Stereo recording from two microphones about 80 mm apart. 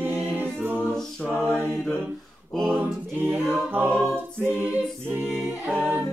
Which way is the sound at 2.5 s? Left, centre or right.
Centre.